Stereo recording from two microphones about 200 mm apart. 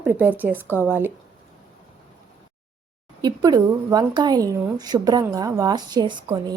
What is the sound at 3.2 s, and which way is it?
A woman's voice, 20° right (ahead or behind).